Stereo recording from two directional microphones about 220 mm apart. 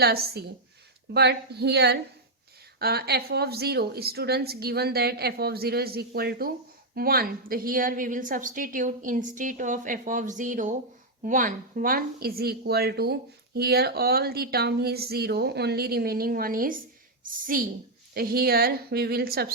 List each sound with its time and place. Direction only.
0.0 s a woman's voice: 45° right (ahead or behind)